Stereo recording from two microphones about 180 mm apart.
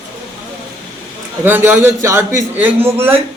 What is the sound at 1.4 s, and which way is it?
A man's voice, 10° right (ahead or behind).